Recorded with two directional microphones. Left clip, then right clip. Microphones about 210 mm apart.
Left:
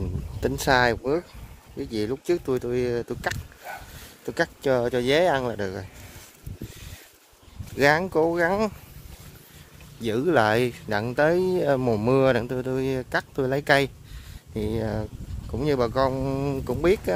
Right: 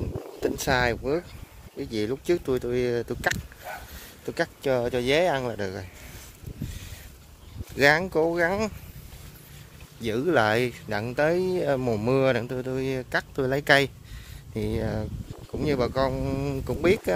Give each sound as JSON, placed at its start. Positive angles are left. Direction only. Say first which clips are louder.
{"t": 0.4, "sound": "speech", "louder": "left 4 dB", "side_deg": 20}
{"t": 4.3, "sound": "speech", "louder": "left 2 dB", "side_deg": 15}
{"t": 7.7, "sound": "speech", "louder": "even", "side_deg": 10}
{"t": 10.0, "sound": "speech", "louder": "left 2 dB", "side_deg": 15}